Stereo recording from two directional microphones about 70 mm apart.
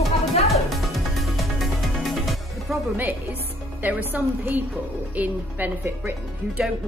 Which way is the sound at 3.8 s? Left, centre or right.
Right.